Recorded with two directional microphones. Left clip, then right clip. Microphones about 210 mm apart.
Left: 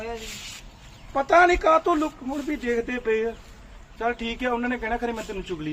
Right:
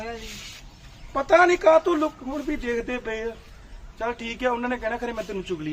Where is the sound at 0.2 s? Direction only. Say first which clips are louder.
Left 2 dB; 35° left (ahead or behind).